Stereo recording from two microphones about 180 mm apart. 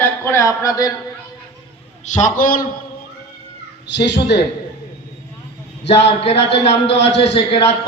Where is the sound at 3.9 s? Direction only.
75° left (ahead or behind).